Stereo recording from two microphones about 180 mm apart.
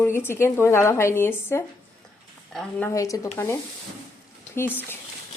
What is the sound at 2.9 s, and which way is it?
Speech, 20° left (ahead or behind).